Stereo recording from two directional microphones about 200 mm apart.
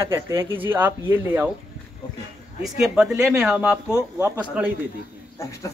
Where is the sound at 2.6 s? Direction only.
5° right (ahead or behind).